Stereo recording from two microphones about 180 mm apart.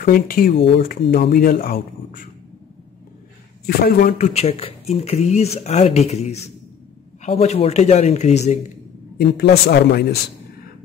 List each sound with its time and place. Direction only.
0.0 s speech: 55° left (ahead or behind)
3.6 s speech: 55° left (ahead or behind)
4.3 s speech: 35° left (ahead or behind)
9.2 s speech: 60° left (ahead or behind)